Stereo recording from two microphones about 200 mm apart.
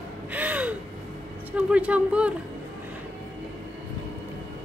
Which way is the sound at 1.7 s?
5° right (ahead or behind).